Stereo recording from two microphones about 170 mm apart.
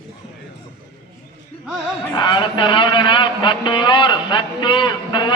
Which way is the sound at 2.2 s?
25° left (ahead or behind).